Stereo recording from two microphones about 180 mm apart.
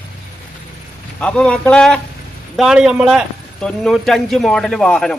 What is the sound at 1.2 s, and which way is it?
Speech, 5° left (ahead or behind).